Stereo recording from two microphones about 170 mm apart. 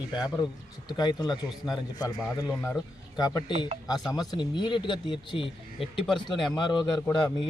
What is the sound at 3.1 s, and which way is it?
A man's voice, 20° left (ahead or behind).